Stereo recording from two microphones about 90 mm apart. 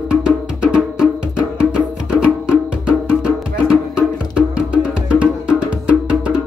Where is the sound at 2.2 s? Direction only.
10° right (ahead or behind).